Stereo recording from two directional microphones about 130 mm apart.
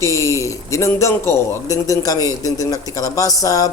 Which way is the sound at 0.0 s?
25° left (ahead or behind).